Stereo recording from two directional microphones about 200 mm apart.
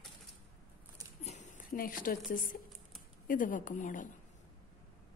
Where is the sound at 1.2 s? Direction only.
35° left (ahead or behind).